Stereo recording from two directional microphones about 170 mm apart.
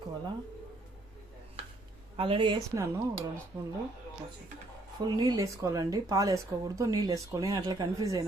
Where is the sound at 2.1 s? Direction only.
30° right (ahead or behind).